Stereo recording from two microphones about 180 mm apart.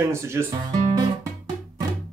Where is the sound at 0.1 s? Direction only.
15° right (ahead or behind).